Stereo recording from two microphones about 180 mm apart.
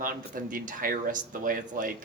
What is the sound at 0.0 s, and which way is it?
A woman's voice, 50° right (ahead or behind).